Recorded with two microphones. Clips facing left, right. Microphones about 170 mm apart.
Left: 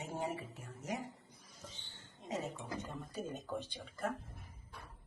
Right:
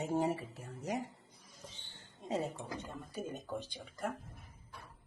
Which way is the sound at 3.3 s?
10° right (ahead or behind).